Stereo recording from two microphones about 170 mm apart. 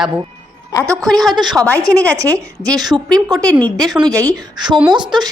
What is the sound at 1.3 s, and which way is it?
Speech, 25° right (ahead or behind).